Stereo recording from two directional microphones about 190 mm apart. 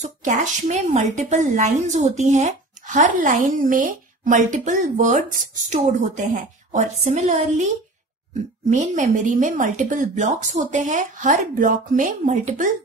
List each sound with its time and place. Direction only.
0.0 s speech: 40° right (ahead or behind)
8.6 s speech: 40° right (ahead or behind)